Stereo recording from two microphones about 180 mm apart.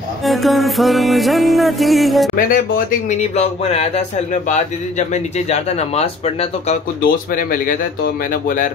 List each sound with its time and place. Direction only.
0.2 s music: centre (ahead or behind)
2.3 s speech: 50° left (ahead or behind)
7.0 s speech: 50° left (ahead or behind)